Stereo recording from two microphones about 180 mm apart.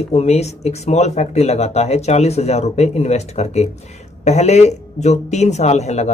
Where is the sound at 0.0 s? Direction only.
35° left (ahead or behind).